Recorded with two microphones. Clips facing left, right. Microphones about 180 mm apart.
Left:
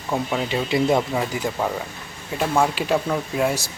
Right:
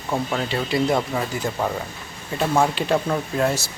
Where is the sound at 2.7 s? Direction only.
5° left (ahead or behind).